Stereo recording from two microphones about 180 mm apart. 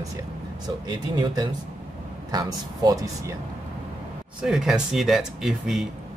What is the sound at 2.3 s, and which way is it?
Speech, 20° right (ahead or behind).